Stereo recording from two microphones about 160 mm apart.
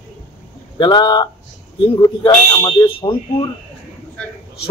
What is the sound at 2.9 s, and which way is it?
Speech, 35° left (ahead or behind).